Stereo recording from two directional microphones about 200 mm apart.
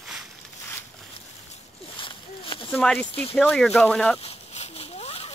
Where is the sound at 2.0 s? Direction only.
25° left (ahead or behind).